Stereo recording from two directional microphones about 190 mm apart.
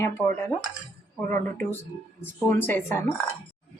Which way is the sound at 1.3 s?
10° left (ahead or behind).